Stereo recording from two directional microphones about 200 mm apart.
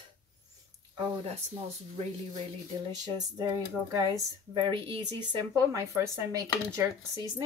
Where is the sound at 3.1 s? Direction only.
20° right (ahead or behind).